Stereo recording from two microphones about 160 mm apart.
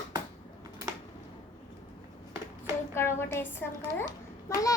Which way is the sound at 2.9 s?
15° left (ahead or behind).